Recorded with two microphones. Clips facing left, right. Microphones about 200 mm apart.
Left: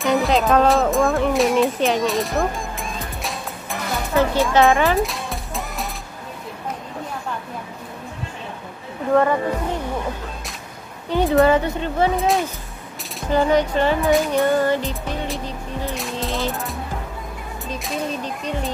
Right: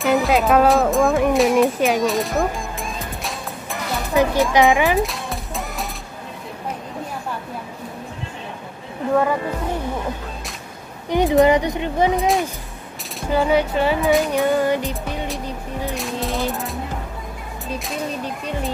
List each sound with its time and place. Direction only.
0.0 s speech: centre (ahead or behind)
3.0 s music: centre (ahead or behind)
4.1 s speech: 15° right (ahead or behind)
4.9 s music: centre (ahead or behind)
11.1 s speech: 15° right (ahead or behind)
13.3 s speech: 5° right (ahead or behind)
15.9 s music: centre (ahead or behind)